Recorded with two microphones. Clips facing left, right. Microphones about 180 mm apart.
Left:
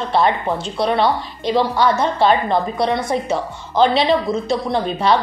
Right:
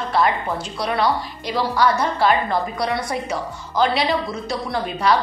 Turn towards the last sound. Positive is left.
turn(degrees=25)  # may be behind; listen again after turning